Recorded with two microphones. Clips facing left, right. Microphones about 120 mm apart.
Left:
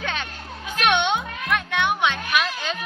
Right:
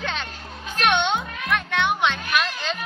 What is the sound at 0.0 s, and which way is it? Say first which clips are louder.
Music: even; 10° left (ahead or behind).